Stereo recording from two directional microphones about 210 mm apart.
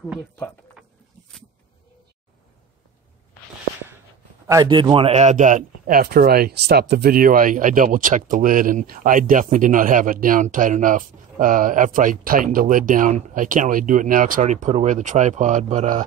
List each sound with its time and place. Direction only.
4.5 s speech: 20° right (ahead or behind)